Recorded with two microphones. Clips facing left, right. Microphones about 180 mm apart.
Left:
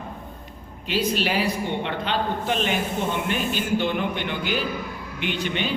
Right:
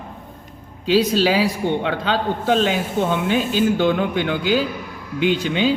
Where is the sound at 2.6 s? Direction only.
90° right.